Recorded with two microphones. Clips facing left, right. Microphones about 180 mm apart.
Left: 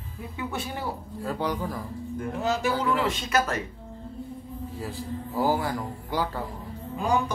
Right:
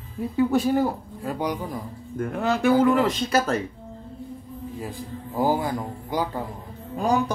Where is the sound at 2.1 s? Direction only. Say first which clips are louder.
Right 3 dB; 55° right (ahead or behind); by 3.6 s 30° right (ahead or behind).